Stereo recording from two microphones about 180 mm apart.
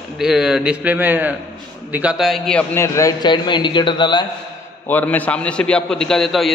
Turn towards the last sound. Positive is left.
turn(degrees=0)  # may be behind; listen again after turning